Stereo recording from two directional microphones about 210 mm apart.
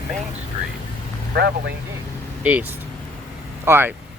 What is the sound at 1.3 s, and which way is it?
Speech, 50° right (ahead or behind).